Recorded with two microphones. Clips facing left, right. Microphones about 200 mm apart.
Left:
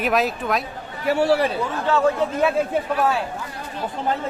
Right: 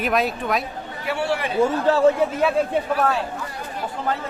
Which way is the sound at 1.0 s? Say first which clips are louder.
Left 6 dB; 40° left (ahead or behind).